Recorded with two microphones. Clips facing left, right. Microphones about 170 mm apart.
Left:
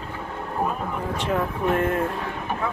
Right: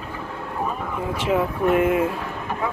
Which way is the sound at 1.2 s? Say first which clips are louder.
Right 4 dB; 5° right (ahead or behind).